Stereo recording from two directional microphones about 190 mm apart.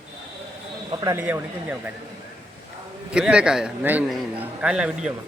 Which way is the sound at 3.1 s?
5° right (ahead or behind).